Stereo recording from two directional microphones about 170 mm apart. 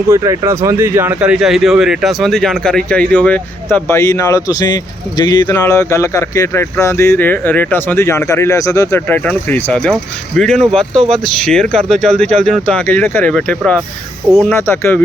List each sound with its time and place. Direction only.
0.1 s speech: 15° right (ahead or behind); by 15.0 s 15° left (ahead or behind)